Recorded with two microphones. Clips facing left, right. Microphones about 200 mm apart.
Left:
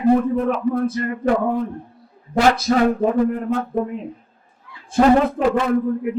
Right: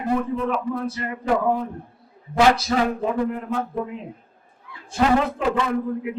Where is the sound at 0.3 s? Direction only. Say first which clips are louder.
Left 5 dB; 50° left (ahead or behind).